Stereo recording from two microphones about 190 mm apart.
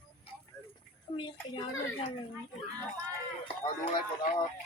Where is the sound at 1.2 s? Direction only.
25° left (ahead or behind).